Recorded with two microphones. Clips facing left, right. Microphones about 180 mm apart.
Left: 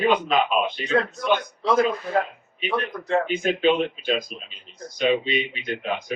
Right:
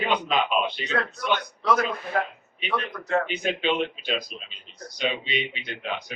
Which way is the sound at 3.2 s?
45° left (ahead or behind).